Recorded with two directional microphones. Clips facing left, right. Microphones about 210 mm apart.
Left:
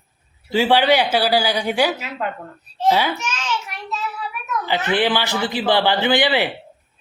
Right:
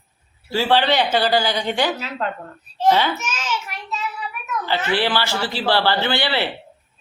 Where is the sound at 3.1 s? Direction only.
5° right (ahead or behind).